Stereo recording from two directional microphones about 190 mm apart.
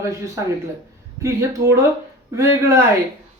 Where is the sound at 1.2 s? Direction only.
15° right (ahead or behind).